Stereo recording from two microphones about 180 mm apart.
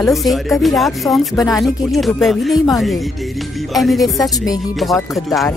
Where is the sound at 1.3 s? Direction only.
20° left (ahead or behind).